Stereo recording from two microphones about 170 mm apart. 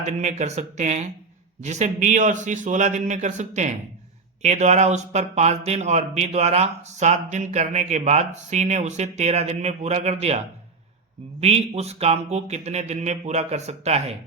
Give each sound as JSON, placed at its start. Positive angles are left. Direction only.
{"t": 0.0, "sound": "a man's voice", "side_deg": -40}